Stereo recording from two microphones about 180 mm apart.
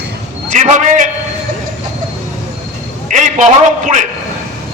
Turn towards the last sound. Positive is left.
turn(degrees=-45)  # may be behind; listen again after turning